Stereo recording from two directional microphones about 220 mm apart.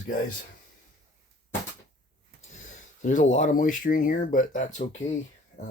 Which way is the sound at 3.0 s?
35° left (ahead or behind).